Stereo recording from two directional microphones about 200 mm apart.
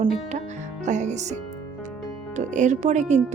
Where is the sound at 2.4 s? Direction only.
35° right (ahead or behind).